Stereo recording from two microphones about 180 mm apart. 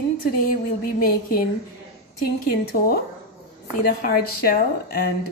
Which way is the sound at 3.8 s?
55° left (ahead or behind).